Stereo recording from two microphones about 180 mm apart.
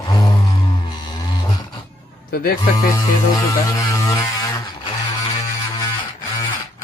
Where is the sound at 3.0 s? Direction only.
20° left (ahead or behind).